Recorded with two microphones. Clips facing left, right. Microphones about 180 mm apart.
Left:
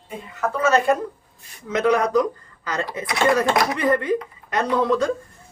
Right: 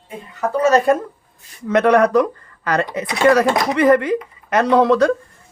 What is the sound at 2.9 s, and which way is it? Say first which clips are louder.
Speech: right 5 dB; 75° right (ahead or behind).